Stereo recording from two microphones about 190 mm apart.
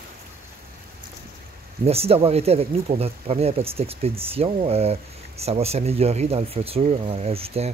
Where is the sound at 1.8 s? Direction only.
30° right (ahead or behind).